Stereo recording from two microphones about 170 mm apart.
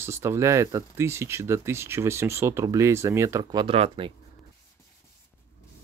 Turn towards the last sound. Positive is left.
turn(degrees=-35)  # may be behind; listen again after turning